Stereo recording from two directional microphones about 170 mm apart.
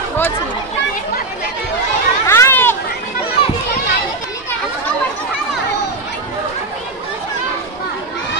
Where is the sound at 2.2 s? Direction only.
15° left (ahead or behind).